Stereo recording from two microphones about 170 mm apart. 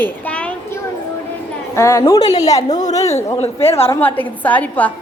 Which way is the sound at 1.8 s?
20° left (ahead or behind).